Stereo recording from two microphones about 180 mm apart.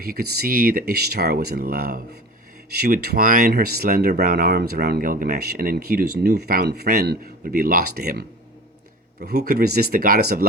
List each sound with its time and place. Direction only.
0.0 s speech: 55° right (ahead or behind)